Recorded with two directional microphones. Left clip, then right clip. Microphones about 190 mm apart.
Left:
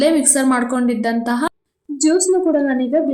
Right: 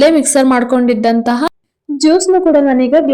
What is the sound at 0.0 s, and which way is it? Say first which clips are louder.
A woman's voice: right 6 dB; 30° right (ahead or behind).